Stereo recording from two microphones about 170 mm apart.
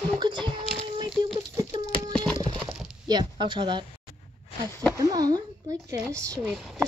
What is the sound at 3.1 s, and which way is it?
Speech, 25° right (ahead or behind).